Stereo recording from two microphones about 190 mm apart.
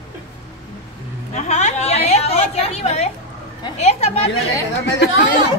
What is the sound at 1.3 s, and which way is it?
A woman's voice, 35° left (ahead or behind).